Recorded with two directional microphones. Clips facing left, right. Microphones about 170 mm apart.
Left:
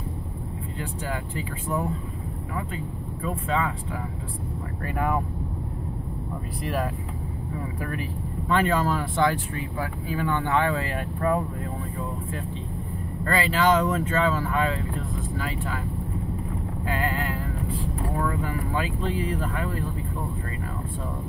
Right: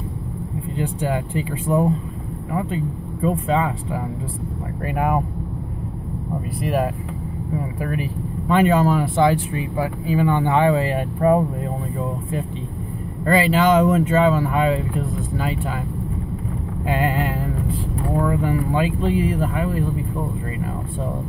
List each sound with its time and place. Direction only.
0.7 s speech: 20° right (ahead or behind)
6.6 s speech: 15° right (ahead or behind)
13.2 s speech: 20° right (ahead or behind)
16.8 s a sound: 20° right (ahead or behind)
18.2 s speech: 25° right (ahead or behind)